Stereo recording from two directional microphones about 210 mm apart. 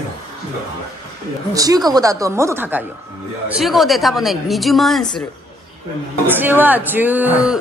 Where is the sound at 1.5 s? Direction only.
15° right (ahead or behind); by 5.0 s centre (ahead or behind).